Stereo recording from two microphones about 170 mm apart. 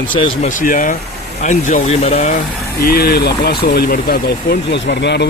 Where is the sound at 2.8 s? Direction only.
65° left (ahead or behind).